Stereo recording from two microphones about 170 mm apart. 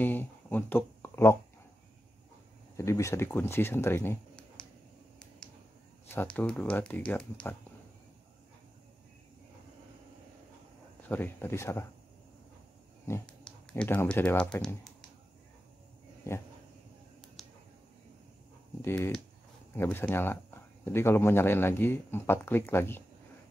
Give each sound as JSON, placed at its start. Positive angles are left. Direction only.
{"t": 0.0, "sound": "speech", "side_deg": 10}
{"t": 2.8, "sound": "speech", "side_deg": 15}
{"t": 6.0, "sound": "speech", "side_deg": 10}
{"t": 11.0, "sound": "speech", "side_deg": 10}
{"t": 13.0, "sound": "speech", "side_deg": 10}
{"t": 16.3, "sound": "speech", "side_deg": 15}
{"t": 17.4, "sound": "a sound", "side_deg": 0}
{"t": 18.8, "sound": "speech", "side_deg": 15}